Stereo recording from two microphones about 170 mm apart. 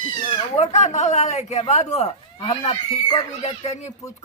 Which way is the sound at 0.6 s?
45° left (ahead or behind).